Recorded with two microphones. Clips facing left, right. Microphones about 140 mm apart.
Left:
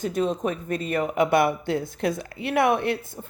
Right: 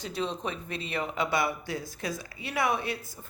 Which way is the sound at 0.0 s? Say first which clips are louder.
Left 8 dB; 50° left (ahead or behind).